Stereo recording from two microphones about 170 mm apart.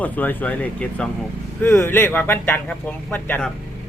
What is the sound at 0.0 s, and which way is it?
Speech, 10° left (ahead or behind).